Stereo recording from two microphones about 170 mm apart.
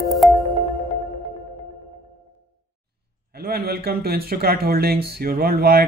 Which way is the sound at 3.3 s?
65° right (ahead or behind).